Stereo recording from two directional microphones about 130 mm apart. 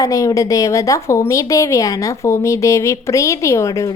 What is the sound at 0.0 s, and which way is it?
A woman's voice, 25° left (ahead or behind).